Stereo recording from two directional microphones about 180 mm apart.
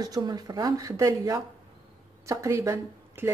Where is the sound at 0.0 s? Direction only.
20° right (ahead or behind).